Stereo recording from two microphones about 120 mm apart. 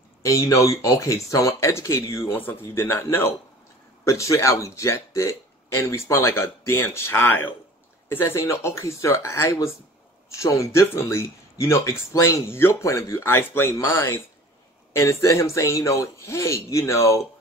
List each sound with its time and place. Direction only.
0.2 s speech: 25° left (ahead or behind)